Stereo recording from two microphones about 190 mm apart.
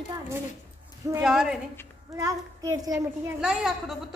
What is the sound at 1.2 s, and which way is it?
Speech, 5° right (ahead or behind).